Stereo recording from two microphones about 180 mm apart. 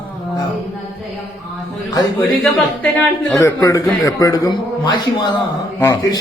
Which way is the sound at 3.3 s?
15° left (ahead or behind).